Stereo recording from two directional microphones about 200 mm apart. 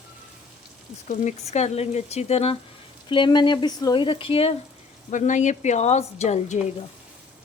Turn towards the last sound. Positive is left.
turn(degrees=35)  # may be behind; listen again after turning